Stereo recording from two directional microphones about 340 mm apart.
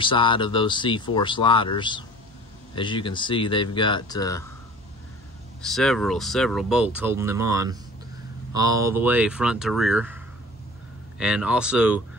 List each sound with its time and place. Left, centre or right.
0.0 s speech: centre
5.6 s speech: centre